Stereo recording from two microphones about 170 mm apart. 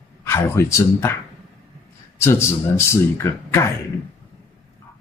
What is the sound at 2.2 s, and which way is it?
Speech, 15° left (ahead or behind).